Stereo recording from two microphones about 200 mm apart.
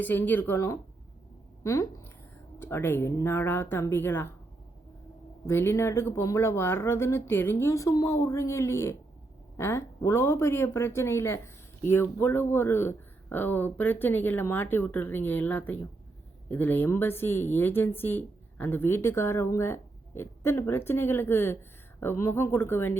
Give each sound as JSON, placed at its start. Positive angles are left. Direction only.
{"t": 0.0, "sound": "speech", "side_deg": 10}
{"t": 5.5, "sound": "speech", "side_deg": 15}